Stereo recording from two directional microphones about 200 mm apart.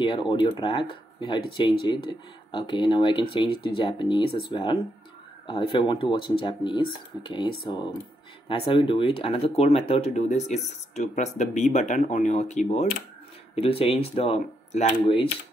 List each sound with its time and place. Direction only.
0.0 s speech: 25° left (ahead or behind)